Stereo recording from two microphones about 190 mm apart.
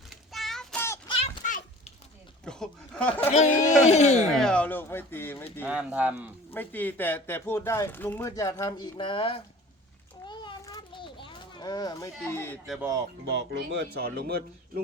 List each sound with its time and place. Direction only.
0.3 s child singing: centre (ahead or behind)
0.9 s a sound: 25° left (ahead or behind)
1.5 s a sound: 45° left (ahead or behind)
2.4 s speech: 5° left (ahead or behind)
3.2 s speech: 40° left (ahead or behind)
4.4 s speech: 5° left (ahead or behind)
5.6 s speech: 5° right (ahead or behind)
6.5 s speech: 10° left (ahead or behind); by 9.4 s 25° left (ahead or behind)
10.2 s children playing: 25° left (ahead or behind)
13.3 s speech: 65° right (ahead or behind)